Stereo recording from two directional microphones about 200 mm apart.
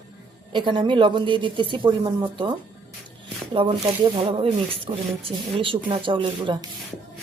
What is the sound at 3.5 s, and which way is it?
Speech, 25° right (ahead or behind).